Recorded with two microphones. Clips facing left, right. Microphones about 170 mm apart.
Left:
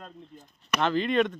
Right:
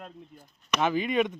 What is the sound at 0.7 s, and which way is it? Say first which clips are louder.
Speech: left 1 dB; 10° right (ahead or behind).